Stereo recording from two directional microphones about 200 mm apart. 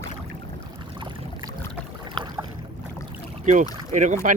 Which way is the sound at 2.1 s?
25° right (ahead or behind).